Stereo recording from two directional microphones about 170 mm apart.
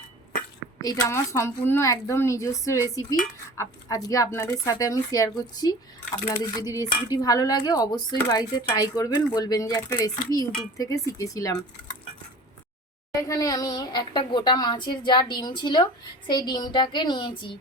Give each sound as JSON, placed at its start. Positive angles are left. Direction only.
{"t": 0.8, "sound": "a woman's voice", "side_deg": 20}
{"t": 13.1, "sound": "a child's voice", "side_deg": 20}